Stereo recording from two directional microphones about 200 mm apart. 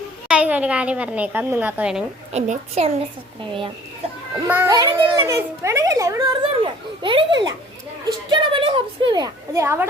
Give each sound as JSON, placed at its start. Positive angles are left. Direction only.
{"t": 0.3, "sound": "a child's voice", "side_deg": -5}
{"t": 2.3, "sound": "a woman's voice", "side_deg": -30}
{"t": 4.4, "sound": "a child's voice", "side_deg": -10}
{"t": 6.6, "sound": "a sound", "side_deg": -25}